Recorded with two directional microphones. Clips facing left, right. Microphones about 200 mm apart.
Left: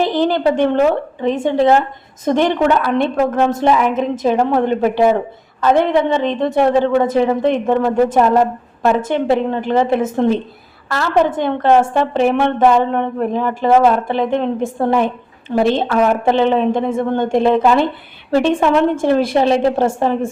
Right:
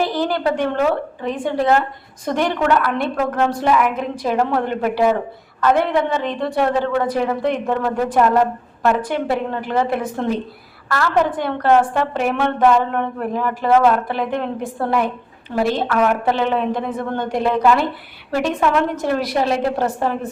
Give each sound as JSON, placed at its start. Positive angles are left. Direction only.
{"t": 0.0, "sound": "a woman's voice", "side_deg": 20}